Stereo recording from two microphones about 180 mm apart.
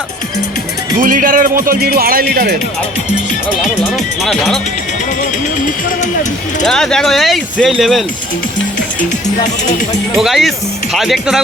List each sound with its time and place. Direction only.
0.9 s speech: 50° right (ahead or behind)
3.6 s speech: centre (ahead or behind)
6.7 s speech: 5° left (ahead or behind)
10.2 s speech: centre (ahead or behind)